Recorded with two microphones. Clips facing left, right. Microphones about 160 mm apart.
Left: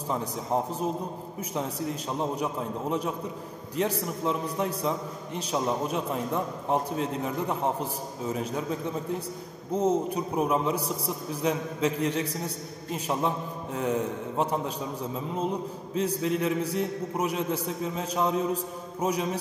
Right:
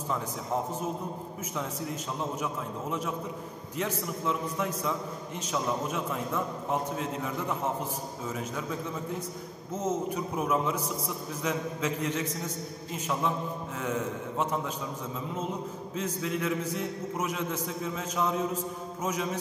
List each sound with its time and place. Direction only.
2.3 s a man's voice: 35° left (ahead or behind)
9.7 s a man's voice: 35° left (ahead or behind)
15.9 s a man's voice: 35° left (ahead or behind)